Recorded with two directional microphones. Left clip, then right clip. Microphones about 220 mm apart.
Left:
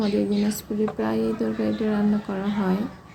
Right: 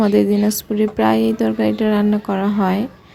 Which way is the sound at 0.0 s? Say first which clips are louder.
Right 9 dB; 40° right (ahead or behind).